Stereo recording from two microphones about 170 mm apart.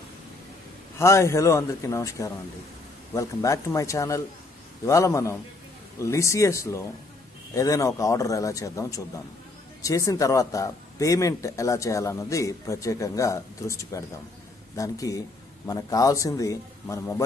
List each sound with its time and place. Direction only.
0.9 s a man's voice: 15° left (ahead or behind)